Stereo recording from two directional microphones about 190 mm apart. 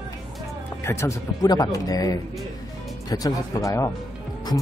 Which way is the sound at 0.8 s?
15° left (ahead or behind).